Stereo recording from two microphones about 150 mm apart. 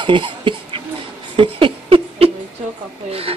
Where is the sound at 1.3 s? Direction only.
35° right (ahead or behind).